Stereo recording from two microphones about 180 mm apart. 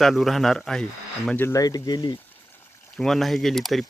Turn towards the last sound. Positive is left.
turn(degrees=0)  # may be behind; listen again after turning